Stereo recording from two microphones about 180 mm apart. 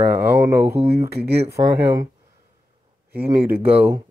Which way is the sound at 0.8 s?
35° right (ahead or behind).